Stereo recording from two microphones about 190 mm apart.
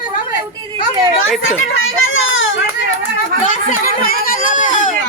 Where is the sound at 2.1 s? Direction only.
85° left.